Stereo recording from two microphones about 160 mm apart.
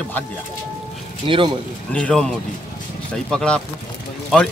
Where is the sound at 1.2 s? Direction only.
30° right (ahead or behind).